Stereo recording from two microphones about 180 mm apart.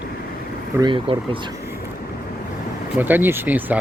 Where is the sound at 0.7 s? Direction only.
25° right (ahead or behind).